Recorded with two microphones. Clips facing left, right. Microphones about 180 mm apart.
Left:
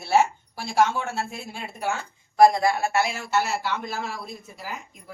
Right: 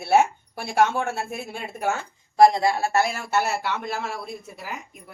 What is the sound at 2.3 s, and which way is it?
Speech, 25° right (ahead or behind).